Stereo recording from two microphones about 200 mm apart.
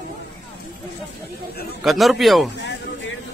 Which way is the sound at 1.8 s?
Centre (ahead or behind).